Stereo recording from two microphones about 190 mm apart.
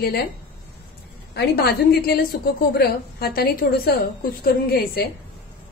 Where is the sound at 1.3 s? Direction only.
60° left (ahead or behind).